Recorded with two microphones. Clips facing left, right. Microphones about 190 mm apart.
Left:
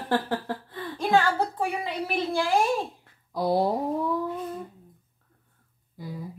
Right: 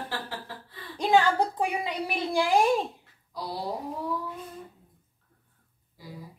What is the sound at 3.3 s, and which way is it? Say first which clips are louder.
Speech: left 11 dB; 55° left (ahead or behind).